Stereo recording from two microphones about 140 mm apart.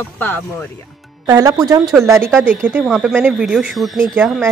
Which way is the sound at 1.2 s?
25° right (ahead or behind).